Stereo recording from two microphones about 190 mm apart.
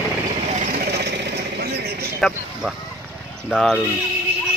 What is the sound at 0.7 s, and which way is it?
Sewing machine, 60° right (ahead or behind).